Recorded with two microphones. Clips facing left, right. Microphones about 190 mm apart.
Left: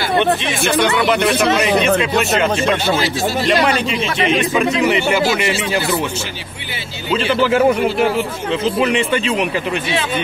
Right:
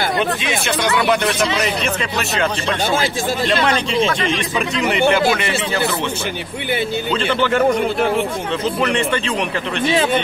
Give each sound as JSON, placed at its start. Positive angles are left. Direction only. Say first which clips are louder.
{"t": 1.4, "sound": "speech", "louder": "left 5 dB", "side_deg": 55}
{"t": 3.4, "sound": "a man's voice", "louder": "left 2 dB", "side_deg": 10}
{"t": 5.0, "sound": "speech", "louder": "right 1 dB", "side_deg": -55}
{"t": 7.1, "sound": "a man's voice", "louder": "left 5 dB", "side_deg": 5}